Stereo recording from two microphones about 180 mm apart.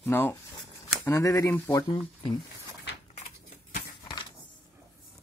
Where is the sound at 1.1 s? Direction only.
15° left (ahead or behind).